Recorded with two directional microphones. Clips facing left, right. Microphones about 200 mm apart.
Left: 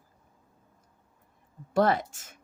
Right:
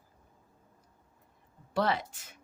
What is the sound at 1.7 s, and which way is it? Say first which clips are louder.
Speech: left 6 dB; 45° left (ahead or behind).